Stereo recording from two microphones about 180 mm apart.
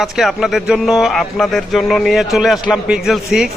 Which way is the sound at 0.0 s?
Centre (ahead or behind).